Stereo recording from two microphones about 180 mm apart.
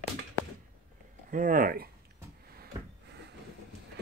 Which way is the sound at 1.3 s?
50° right (ahead or behind).